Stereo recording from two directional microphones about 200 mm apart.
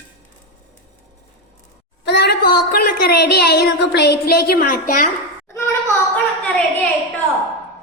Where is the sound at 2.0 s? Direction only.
55° left (ahead or behind).